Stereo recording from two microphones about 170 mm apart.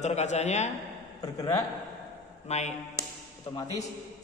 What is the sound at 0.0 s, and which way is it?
Speech, 40° left (ahead or behind).